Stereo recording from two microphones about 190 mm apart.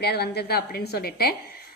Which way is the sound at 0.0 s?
60° left (ahead or behind).